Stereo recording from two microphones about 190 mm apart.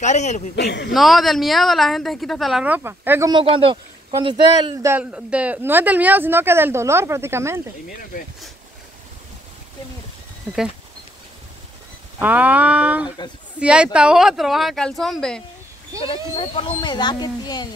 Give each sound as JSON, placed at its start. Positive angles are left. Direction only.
{"t": 0.0, "sound": "a man's voice", "side_deg": 35}
{"t": 0.6, "sound": "a man's voice", "side_deg": 60}
{"t": 0.9, "sound": "a woman's voice", "side_deg": 0}
{"t": 4.7, "sound": "a woman's voice", "side_deg": -10}
{"t": 12.2, "sound": "a woman's voice", "side_deg": -10}
{"t": 16.0, "sound": "speech", "side_deg": 30}